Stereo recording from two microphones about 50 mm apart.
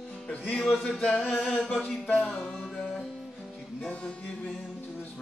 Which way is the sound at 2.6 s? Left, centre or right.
Centre.